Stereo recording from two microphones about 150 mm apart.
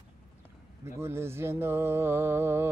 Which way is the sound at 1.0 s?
15° right (ahead or behind).